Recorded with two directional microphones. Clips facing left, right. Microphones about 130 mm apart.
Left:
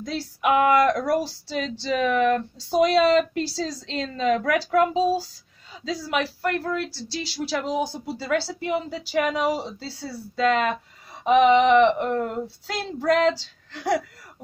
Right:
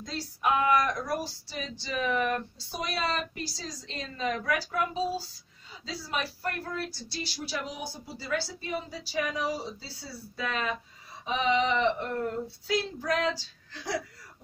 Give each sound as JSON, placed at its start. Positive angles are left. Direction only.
{"t": 0.0, "sound": "speech", "side_deg": 70}